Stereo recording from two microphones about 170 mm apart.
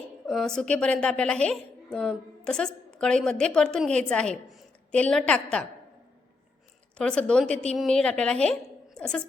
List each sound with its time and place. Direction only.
0.3 s a woman's voice: centre (ahead or behind)
6.9 s a woman's voice: 5° left (ahead or behind)